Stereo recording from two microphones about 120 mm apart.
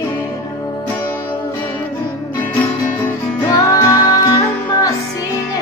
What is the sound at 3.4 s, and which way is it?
Music, 25° left (ahead or behind).